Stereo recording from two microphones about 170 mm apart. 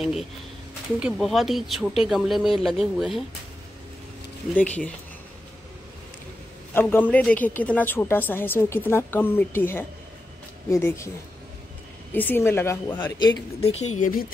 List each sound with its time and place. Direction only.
0.0 s speech: centre (ahead or behind)
4.6 s a woman's voice: 10° left (ahead or behind)
6.7 s a woman's voice: 10° left (ahead or behind)
12.1 s a woman's voice: 10° left (ahead or behind)
13.6 s a woman's voice: 40° left (ahead or behind)